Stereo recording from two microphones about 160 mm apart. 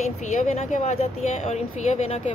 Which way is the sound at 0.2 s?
50° left (ahead or behind).